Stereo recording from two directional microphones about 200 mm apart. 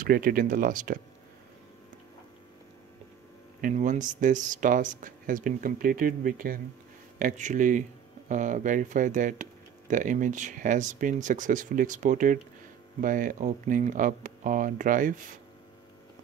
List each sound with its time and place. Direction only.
0.0 s speech: 45° right (ahead or behind)
3.6 s speech: 40° right (ahead or behind)